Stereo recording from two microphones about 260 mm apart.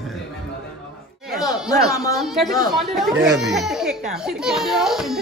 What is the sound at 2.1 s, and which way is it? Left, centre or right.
Speech, centre.